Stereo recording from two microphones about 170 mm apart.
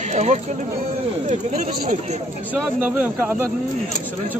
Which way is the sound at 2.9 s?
10° right (ahead or behind).